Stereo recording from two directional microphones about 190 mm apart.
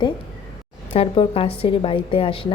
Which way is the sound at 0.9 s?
30° left (ahead or behind).